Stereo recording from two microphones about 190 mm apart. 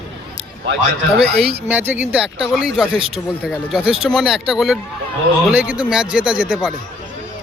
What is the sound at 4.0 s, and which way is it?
A man's voice, centre (ahead or behind).